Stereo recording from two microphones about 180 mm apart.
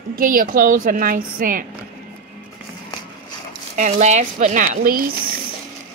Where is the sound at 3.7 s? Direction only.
45° right (ahead or behind).